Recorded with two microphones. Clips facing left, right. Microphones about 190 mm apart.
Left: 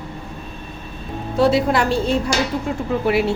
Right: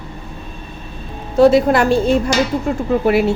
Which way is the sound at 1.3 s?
50° right (ahead or behind).